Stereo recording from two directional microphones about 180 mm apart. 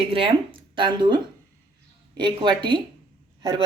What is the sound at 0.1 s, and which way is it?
Speech, 30° right (ahead or behind).